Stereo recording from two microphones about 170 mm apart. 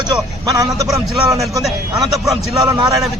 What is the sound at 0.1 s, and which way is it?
Speech, 20° right (ahead or behind).